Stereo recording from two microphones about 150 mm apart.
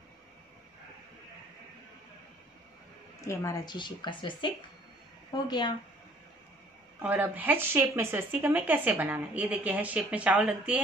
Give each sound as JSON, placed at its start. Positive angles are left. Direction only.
{"t": 3.2, "sound": "speech", "side_deg": 20}
{"t": 3.7, "sound": "speech", "side_deg": 30}
{"t": 7.0, "sound": "speech", "side_deg": -10}